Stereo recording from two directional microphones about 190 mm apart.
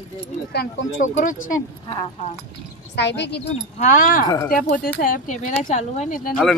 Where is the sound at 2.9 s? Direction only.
65° left (ahead or behind).